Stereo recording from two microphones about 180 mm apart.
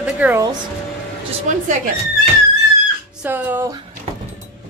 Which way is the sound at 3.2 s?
10° right (ahead or behind).